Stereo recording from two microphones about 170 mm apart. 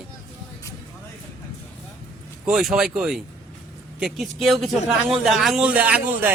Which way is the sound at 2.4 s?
5° right (ahead or behind).